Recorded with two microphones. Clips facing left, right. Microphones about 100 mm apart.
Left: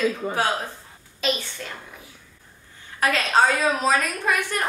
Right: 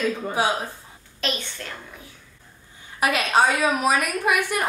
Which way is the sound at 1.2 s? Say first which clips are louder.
Left 3 dB; centre (ahead or behind).